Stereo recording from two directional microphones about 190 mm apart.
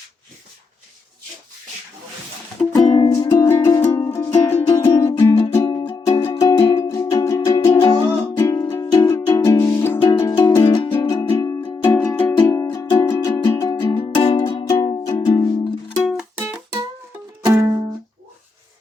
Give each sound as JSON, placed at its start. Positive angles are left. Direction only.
{"t": 2.7, "sound": "music", "side_deg": 20}
{"t": 16.4, "sound": "music", "side_deg": -10}